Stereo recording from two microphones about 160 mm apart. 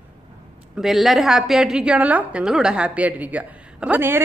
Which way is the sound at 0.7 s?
Centre (ahead or behind).